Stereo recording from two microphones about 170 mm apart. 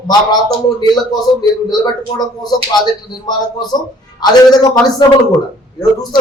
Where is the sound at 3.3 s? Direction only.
25° left (ahead or behind).